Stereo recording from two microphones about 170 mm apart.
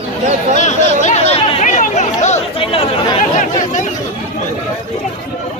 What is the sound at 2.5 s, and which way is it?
Chatter, 30° left (ahead or behind).